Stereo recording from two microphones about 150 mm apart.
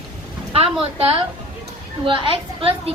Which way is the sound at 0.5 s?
40° right (ahead or behind).